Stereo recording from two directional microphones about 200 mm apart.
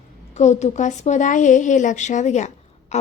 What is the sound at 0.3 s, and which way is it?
A woman's voice, 35° left (ahead or behind).